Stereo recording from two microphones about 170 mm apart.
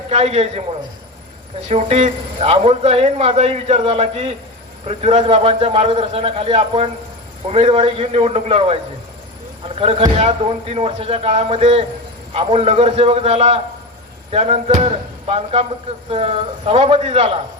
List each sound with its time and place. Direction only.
0.1 s a man's voice: 40° right (ahead or behind)
1.6 s a man's voice: 40° right (ahead or behind)